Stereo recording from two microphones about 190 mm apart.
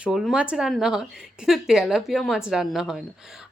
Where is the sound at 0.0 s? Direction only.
5° right (ahead or behind).